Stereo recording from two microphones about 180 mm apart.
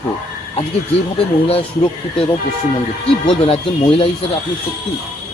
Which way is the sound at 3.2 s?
30° left (ahead or behind).